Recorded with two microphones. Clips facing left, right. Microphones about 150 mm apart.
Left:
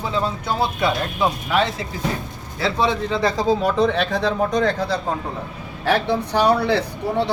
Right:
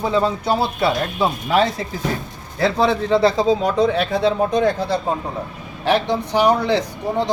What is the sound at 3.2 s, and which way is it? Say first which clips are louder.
Speech: right 3 dB; 30° right (ahead or behind).